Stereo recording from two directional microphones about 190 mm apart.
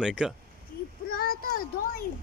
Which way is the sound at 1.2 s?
50° left (ahead or behind).